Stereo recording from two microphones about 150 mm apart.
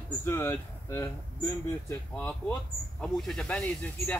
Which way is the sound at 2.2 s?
10° left (ahead or behind).